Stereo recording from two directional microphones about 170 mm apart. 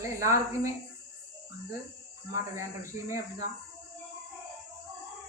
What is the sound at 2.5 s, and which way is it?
Speech, 15° right (ahead or behind).